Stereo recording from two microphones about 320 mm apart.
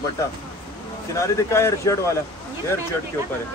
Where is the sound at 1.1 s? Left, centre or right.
Centre.